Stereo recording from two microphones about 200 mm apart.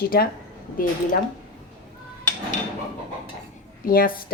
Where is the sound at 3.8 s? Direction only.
45° left (ahead or behind).